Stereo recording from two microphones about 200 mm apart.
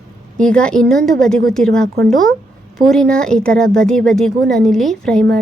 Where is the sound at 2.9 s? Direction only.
5° left (ahead or behind).